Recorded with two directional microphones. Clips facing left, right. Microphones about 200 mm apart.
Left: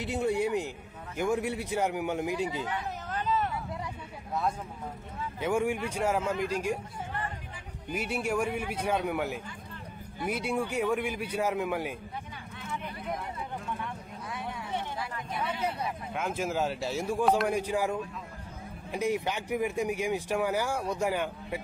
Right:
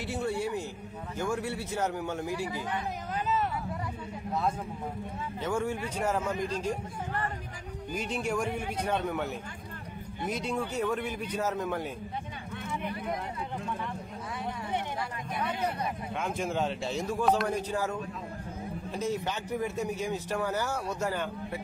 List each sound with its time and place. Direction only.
0.0 s a sound: 20° left (ahead or behind)
1.1 s speech: 15° left (ahead or behind)
2.7 s a sound: 10° right (ahead or behind)
4.3 s speech: centre (ahead or behind)
5.4 s speech: 15° left (ahead or behind)
7.9 s speech: 10° left (ahead or behind)
15.6 s a man's voice: 5° left (ahead or behind)